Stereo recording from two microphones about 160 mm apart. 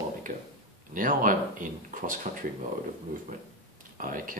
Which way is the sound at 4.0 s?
55° right (ahead or behind).